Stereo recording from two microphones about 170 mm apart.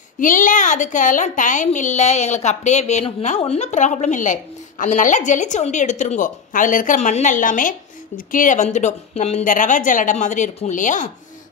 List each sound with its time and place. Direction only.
0.2 s a woman's voice: 50° left (ahead or behind)